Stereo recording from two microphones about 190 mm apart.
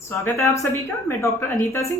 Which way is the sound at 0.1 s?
15° left (ahead or behind).